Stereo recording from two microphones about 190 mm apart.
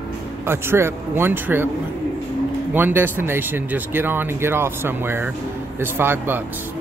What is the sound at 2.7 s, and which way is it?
Speech, 10° right (ahead or behind).